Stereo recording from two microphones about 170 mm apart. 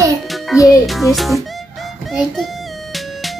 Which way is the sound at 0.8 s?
Centre (ahead or behind).